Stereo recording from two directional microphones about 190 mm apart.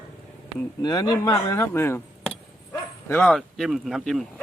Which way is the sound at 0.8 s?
20° left (ahead or behind).